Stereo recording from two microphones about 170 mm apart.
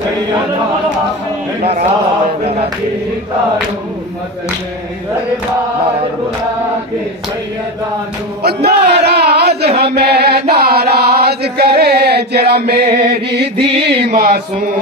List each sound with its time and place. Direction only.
8.4 s a sound: 70° right (ahead or behind)
9.8 s chant: 75° right (ahead or behind)
13.6 s mantra: 35° right (ahead or behind)
14.0 s mantra: 60° right (ahead or behind)